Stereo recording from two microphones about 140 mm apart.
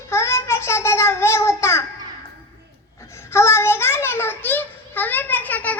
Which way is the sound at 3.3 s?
20° left (ahead or behind).